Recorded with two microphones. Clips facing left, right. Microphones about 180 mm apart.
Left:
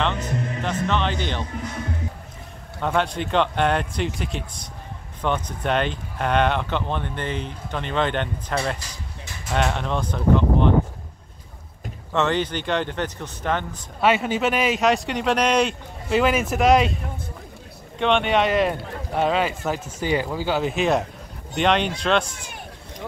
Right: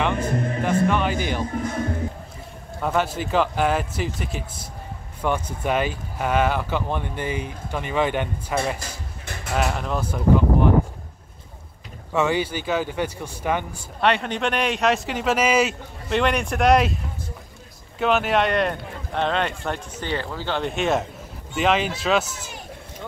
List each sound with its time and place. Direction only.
0.0 s music: 10° right (ahead or behind)
0.8 s speech: 10° right (ahead or behind)
2.8 s a man's voice: 5° right (ahead or behind)
8.7 s music: 55° right (ahead or behind)
9.5 s speech: 5° right (ahead or behind)
12.1 s speech: 10° right (ahead or behind)
14.0 s a man's voice: 5° left (ahead or behind)